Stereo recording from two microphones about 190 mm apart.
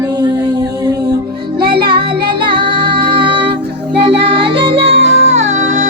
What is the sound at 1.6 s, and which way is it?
Music, 60° right (ahead or behind).